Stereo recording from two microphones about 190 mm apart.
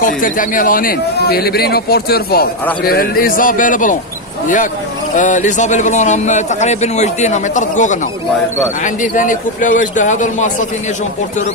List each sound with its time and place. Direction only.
0.0 s a man's voice: 45° left (ahead or behind)
5.1 s a man's voice: 40° left (ahead or behind)